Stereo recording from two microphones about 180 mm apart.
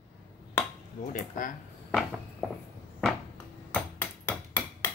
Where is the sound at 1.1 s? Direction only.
50° left (ahead or behind).